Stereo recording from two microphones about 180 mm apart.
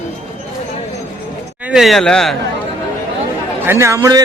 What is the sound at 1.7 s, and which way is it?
Speech, centre (ahead or behind).